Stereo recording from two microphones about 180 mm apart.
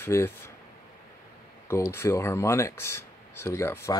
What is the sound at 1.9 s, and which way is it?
Speech, 15° left (ahead or behind).